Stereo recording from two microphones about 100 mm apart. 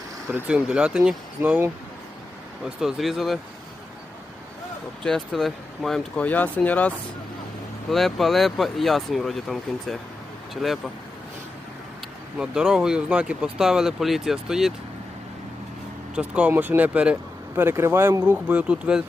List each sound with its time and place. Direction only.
0.4 s speech: 10° right (ahead or behind)
1.4 s speech: 25° right (ahead or behind)
2.6 s speech: 5° right (ahead or behind)
5.0 s speech: 5° left (ahead or behind)
6.2 s speech: 15° left (ahead or behind)
7.9 s speech: centre (ahead or behind)
12.4 s speech: 5° right (ahead or behind)
16.1 s speech: 15° right (ahead or behind)
17.6 s speech: 25° right (ahead or behind); by 19.0 s 10° right (ahead or behind)